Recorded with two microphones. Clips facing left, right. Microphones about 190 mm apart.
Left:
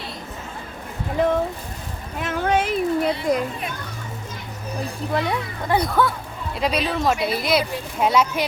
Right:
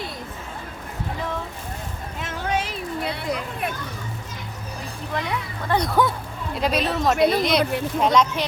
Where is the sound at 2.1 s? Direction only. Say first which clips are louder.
Left 5 dB; 55° left (ahead or behind).